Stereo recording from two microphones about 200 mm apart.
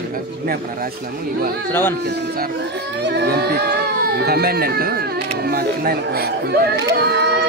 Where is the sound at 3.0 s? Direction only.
50° right (ahead or behind).